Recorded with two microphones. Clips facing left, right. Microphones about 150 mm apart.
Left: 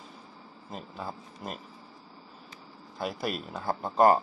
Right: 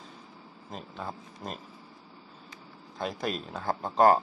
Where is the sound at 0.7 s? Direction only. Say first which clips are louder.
Even; 5° left (ahead or behind).